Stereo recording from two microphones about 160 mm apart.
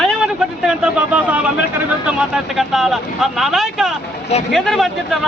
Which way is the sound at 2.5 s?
Centre (ahead or behind).